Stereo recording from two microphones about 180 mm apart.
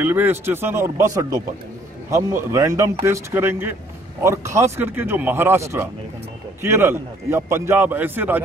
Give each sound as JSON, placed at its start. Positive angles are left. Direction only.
{"t": 0.0, "sound": "a man's voice", "side_deg": -10}